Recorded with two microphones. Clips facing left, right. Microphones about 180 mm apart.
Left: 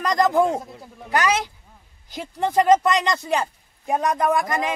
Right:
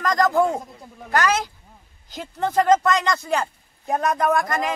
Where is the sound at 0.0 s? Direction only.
20° left (ahead or behind).